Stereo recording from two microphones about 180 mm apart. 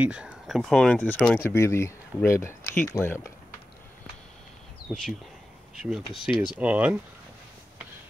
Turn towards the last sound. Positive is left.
turn(degrees=-10)  # may be behind; listen again after turning